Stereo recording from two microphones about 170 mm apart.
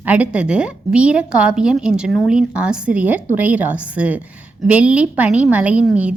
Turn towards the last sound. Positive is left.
turn(degrees=-10)  # may be behind; listen again after turning